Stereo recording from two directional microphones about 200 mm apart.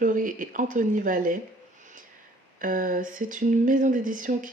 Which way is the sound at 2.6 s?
45° right (ahead or behind).